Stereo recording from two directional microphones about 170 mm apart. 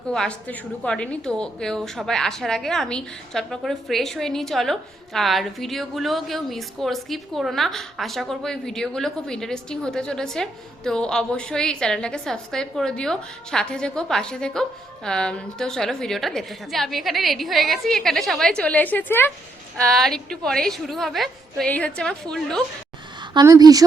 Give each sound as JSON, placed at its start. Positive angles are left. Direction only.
{"t": 0.1, "sound": "a woman's voice", "side_deg": 5}
{"t": 23.3, "sound": "a woman's voice", "side_deg": -20}